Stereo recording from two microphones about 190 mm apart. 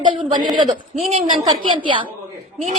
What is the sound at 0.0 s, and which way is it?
A woman's voice, 25° right (ahead or behind).